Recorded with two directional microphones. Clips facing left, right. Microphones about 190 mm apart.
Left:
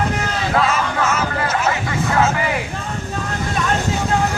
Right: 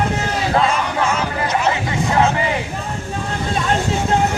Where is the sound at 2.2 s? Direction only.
25° right (ahead or behind).